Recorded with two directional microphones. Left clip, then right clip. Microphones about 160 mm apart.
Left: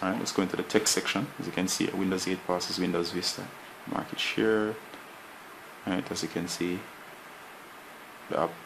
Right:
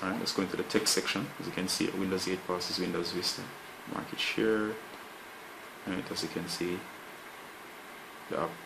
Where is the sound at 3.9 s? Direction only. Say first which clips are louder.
Left 3 dB; 50° left (ahead or behind).